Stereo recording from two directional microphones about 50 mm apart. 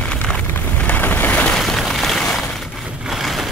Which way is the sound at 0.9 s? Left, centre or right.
Left.